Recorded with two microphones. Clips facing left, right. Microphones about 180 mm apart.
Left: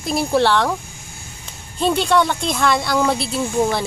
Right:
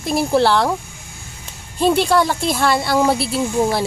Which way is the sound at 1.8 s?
5° right (ahead or behind).